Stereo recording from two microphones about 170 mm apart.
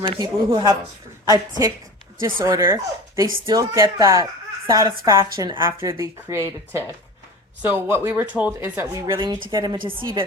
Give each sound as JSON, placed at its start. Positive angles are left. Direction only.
{"t": 0.0, "sound": "speech", "side_deg": -25}
{"t": 9.2, "sound": "speech", "side_deg": -25}